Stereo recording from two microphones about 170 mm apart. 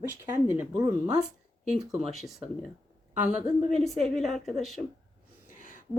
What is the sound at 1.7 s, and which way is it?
Speech, 5° right (ahead or behind).